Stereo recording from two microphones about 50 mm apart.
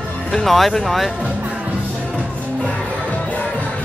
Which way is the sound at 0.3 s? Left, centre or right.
Centre.